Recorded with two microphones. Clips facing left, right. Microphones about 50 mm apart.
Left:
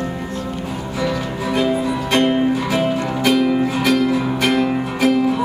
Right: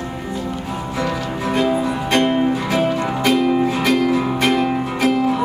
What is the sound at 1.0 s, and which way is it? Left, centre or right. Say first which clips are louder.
Music: left 1 dB; right.